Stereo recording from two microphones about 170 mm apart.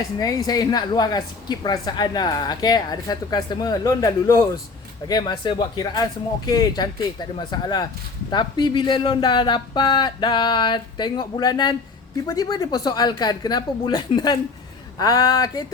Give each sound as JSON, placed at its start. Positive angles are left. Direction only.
{"t": 0.2, "sound": "a woman's voice", "side_deg": 20}